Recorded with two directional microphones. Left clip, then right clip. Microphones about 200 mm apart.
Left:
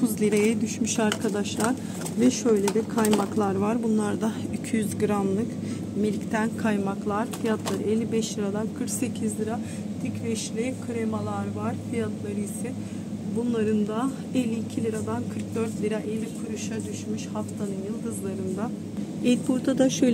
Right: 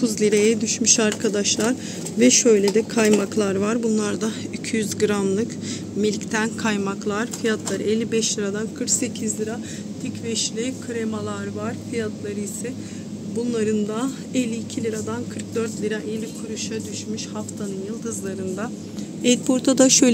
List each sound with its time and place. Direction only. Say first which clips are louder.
0.0 s a woman's voice: right 5 dB; 10° left (ahead or behind); by 2.4 s 5° right (ahead or behind)
2.4 s speech: right 6 dB; 15° right (ahead or behind)
3.3 s speech: right 4 dB; 5° right (ahead or behind)
10.3 s speech: right 6 dB; centre (ahead or behind)
13.5 s speech: right 3 dB; 5° right (ahead or behind)
19.2 s speech: right 6 dB; 10° right (ahead or behind)